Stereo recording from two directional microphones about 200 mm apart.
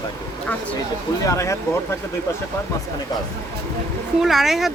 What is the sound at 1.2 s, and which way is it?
Speech, 15° left (ahead or behind).